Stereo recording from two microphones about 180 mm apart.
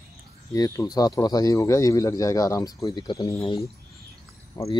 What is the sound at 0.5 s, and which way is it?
Speech, 20° left (ahead or behind).